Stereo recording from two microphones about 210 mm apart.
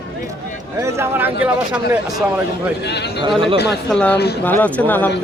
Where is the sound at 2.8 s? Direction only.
55° left (ahead or behind).